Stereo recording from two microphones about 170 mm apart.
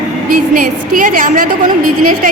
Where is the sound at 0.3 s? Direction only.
55° right (ahead or behind).